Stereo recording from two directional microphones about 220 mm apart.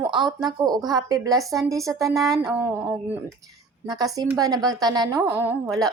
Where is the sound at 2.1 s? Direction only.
Centre (ahead or behind).